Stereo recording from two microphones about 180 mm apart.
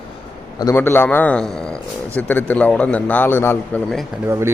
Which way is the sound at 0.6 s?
15° left (ahead or behind).